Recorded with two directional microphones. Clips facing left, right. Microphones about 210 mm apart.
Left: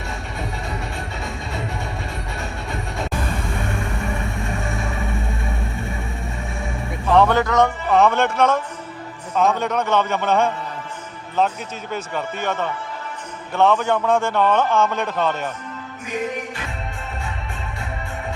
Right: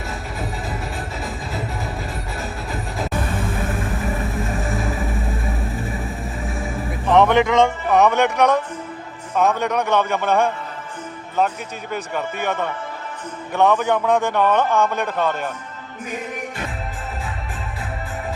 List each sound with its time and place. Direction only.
2.4 s music: centre (ahead or behind)
7.1 s music: 20° right (ahead or behind)
7.9 s a man's voice: 15° right (ahead or behind)